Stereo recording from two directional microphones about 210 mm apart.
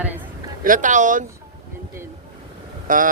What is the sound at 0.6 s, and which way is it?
Speech, 40° right (ahead or behind).